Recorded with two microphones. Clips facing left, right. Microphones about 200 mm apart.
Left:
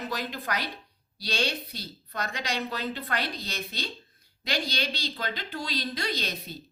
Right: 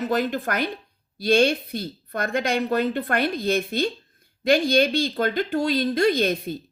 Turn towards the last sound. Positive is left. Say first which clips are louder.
# right 13 dB
turn(degrees=-50)  # may be behind; listen again after turning